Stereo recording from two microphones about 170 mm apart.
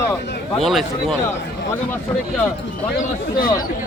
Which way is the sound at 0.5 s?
Centre (ahead or behind).